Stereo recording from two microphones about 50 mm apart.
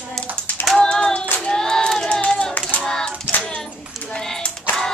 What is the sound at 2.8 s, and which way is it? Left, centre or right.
Child singing, centre.